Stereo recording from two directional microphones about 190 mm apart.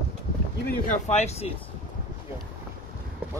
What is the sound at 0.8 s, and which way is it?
Speech, 35° left (ahead or behind).